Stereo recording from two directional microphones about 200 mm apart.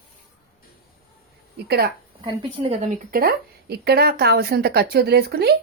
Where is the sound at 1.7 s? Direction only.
55° right (ahead or behind).